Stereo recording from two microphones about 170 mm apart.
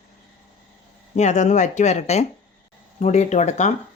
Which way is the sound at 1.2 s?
45° left (ahead or behind).